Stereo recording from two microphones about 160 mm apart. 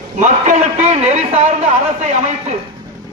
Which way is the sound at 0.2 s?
50° right (ahead or behind).